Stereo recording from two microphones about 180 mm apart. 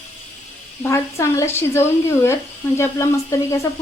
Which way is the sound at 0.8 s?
15° left (ahead or behind).